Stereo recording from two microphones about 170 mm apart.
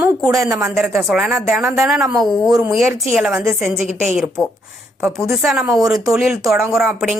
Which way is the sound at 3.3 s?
15° right (ahead or behind).